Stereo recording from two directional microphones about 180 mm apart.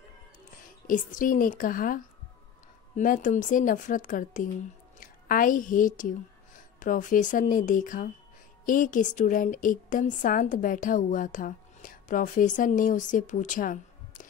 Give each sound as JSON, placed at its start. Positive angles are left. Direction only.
{"t": 0.8, "sound": "a woman's voice", "side_deg": 45}